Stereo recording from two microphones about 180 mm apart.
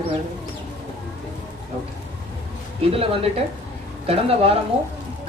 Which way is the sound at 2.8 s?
30° right (ahead or behind).